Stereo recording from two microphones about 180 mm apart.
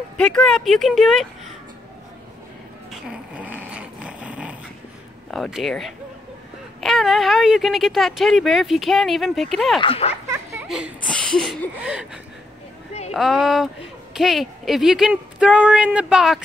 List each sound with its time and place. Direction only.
0.2 s speech: 5° left (ahead or behind)
2.9 s dog: 5° right (ahead or behind)
5.3 s speech: centre (ahead or behind)
9.8 s speech: 35° left (ahead or behind)
10.2 s a sound: 15° right (ahead or behind)
11.1 s speech: 5° left (ahead or behind)